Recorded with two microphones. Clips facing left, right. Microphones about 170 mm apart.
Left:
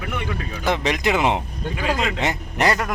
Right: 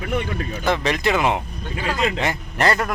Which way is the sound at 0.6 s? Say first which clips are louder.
Even; 15° left (ahead or behind).